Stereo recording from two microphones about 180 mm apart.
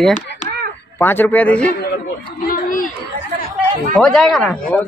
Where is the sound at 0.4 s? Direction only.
40° left (ahead or behind).